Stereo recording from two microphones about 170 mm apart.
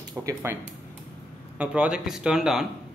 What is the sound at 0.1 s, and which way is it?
Speech, 20° right (ahead or behind).